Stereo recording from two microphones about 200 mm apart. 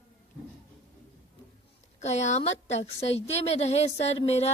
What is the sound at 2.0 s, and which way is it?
Speech, 35° left (ahead or behind).